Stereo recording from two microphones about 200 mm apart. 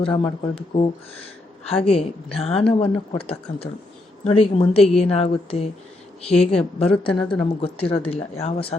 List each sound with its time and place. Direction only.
0.0 s a woman's voice: 25° left (ahead or behind)